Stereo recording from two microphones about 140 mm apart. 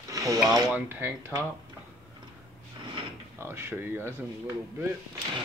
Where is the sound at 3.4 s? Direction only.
15° right (ahead or behind).